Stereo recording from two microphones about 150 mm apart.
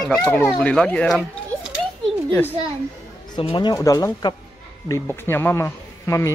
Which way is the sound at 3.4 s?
35° left (ahead or behind).